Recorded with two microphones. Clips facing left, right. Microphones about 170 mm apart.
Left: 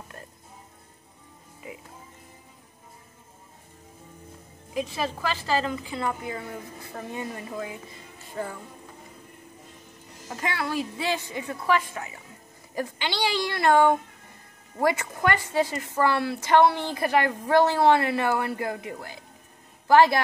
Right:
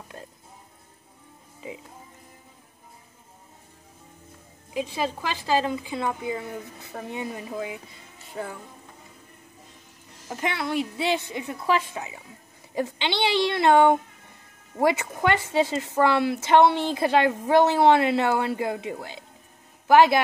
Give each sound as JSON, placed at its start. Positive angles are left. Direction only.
{"t": 4.9, "sound": "a woman's voice", "side_deg": -15}
{"t": 10.3, "sound": "a woman's voice", "side_deg": -20}